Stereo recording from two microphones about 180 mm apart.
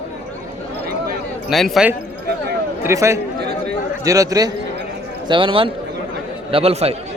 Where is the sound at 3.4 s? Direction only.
65° right (ahead or behind).